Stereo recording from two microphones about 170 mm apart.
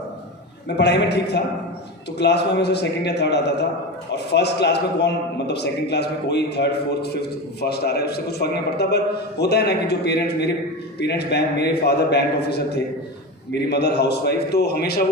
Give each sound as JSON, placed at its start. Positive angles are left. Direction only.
{"t": 0.8, "sound": "a man's voice", "side_deg": 80}